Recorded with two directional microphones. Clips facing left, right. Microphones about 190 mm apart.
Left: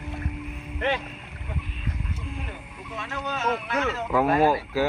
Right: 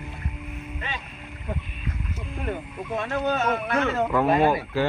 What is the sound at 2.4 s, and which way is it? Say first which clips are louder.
Speech: right 9 dB; 55° right (ahead or behind).